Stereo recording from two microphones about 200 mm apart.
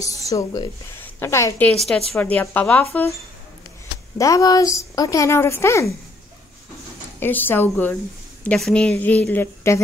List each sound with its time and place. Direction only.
0.0 s a woman's voice: 15° left (ahead or behind)
4.2 s a woman's voice: 15° left (ahead or behind)
7.2 s a woman's voice: 10° left (ahead or behind)